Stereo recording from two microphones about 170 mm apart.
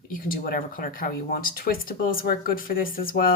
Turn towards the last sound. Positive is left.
turn(degrees=55)  # may be behind; listen again after turning